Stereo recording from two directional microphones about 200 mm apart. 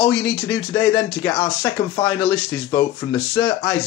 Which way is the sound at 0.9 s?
15° left (ahead or behind).